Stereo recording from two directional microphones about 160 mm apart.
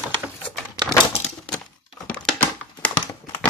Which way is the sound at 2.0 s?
10° left (ahead or behind).